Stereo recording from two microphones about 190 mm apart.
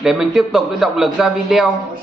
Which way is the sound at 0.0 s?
Centre (ahead or behind).